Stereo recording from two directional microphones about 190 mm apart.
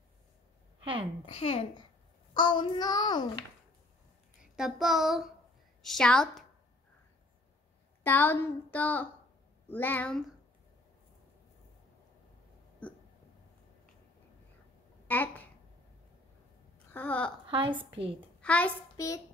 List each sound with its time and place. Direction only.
1.2 s a child's voice: 30° left (ahead or behind)
4.4 s a child's voice: 5° right (ahead or behind)
8.0 s a woman's voice: 10° left (ahead or behind)
15.0 s a sound: 10° left (ahead or behind)
16.9 s a woman's voice: 10° left (ahead or behind)
17.5 s a woman's voice: 25° right (ahead or behind)
18.4 s a child's voice: 5° left (ahead or behind)